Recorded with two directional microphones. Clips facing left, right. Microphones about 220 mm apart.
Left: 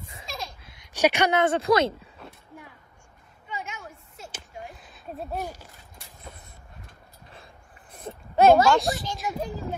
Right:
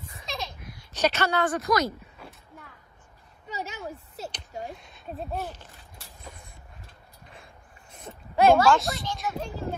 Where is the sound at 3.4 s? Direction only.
40° right (ahead or behind).